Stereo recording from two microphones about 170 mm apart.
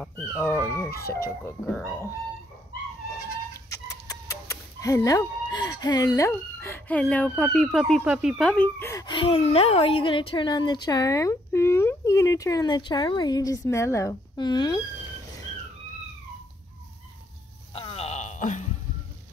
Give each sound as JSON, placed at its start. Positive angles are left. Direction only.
{"t": 0.0, "sound": "speech", "side_deg": 10}
{"t": 3.7, "sound": "speech", "side_deg": 20}
{"t": 9.0, "sound": "speech", "side_deg": 30}
{"t": 17.7, "sound": "a sound", "side_deg": 35}